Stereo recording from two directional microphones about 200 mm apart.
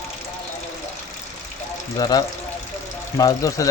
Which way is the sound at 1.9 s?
20° left (ahead or behind).